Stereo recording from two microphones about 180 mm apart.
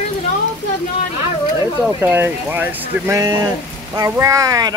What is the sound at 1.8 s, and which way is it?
Speech, 10° right (ahead or behind).